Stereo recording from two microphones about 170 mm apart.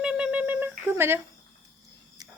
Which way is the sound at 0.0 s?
5° right (ahead or behind).